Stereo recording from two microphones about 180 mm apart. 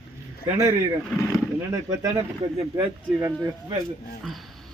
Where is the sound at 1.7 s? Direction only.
20° right (ahead or behind).